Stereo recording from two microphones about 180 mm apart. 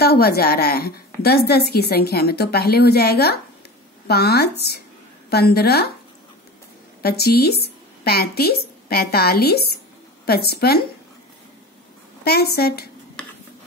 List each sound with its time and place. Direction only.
0.0 s a woman's voice: 60° left (ahead or behind)
7.0 s a woman's voice: 60° left (ahead or behind)
12.3 s a woman's voice: 60° left (ahead or behind)